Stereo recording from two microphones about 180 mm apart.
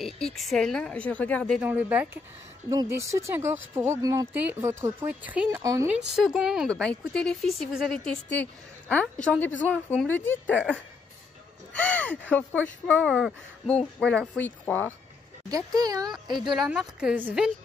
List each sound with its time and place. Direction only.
0.4 s a woman's voice: centre (ahead or behind)
1.6 s speech: 10° right (ahead or behind)
3.1 s speech: 15° right (ahead or behind)
5.6 s speech: 20° right (ahead or behind)
5.9 s a woman's voice: 5° right (ahead or behind)
11.7 s a woman's voice: 10° left (ahead or behind)
15.5 s speech: 20° right (ahead or behind)
16.5 s a woman's voice: centre (ahead or behind)